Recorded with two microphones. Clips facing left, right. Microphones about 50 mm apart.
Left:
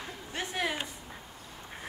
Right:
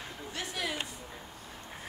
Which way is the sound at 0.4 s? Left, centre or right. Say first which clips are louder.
Left 4 dB; left.